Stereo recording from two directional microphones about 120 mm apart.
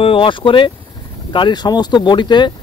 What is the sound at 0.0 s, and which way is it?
Speech, 45° left (ahead or behind).